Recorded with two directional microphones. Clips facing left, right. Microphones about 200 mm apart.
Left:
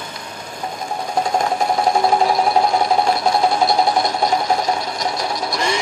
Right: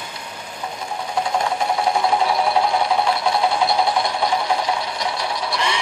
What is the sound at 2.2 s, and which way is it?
Music, 45° left (ahead or behind).